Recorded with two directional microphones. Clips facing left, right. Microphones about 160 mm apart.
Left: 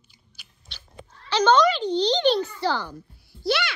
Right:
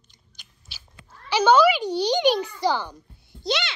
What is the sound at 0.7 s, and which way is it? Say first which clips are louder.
Cat: left 2 dB; 5° right (ahead or behind).